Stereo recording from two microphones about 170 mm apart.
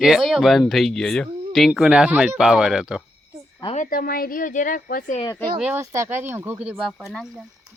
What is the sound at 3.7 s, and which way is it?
A woman's voice, 55° left (ahead or behind).